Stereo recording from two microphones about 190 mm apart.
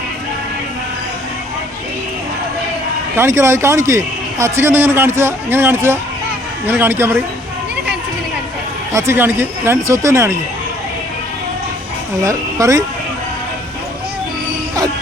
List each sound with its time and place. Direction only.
3.2 s a man's voice: 15° right (ahead or behind)
8.9 s a man's voice: 15° right (ahead or behind)
12.2 s a man's voice: 15° right (ahead or behind)